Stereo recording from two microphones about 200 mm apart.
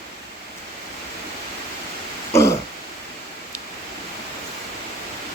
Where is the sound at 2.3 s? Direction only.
15° left (ahead or behind).